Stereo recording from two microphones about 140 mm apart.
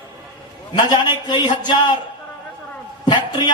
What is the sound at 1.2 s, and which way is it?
Speech, 35° left (ahead or behind).